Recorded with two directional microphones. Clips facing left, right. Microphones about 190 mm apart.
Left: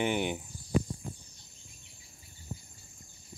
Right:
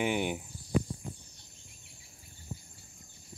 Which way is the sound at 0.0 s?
5° right (ahead or behind).